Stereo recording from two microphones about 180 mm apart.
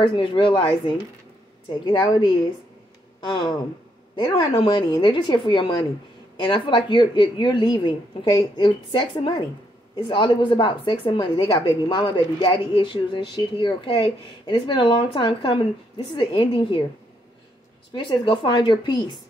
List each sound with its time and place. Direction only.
0.0 s a woman's voice: 25° left (ahead or behind)
17.9 s a woman's voice: 25° left (ahead or behind)